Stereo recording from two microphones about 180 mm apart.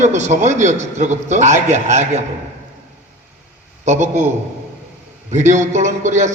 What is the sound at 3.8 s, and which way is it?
Speech, 40° right (ahead or behind).